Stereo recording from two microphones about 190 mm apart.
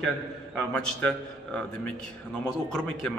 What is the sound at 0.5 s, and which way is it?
A man's voice, 5° left (ahead or behind).